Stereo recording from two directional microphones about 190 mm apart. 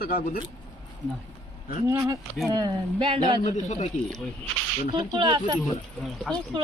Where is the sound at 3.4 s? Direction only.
40° left (ahead or behind).